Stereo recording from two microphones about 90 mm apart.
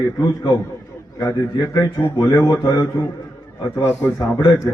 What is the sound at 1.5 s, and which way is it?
A man's voice, 45° left (ahead or behind).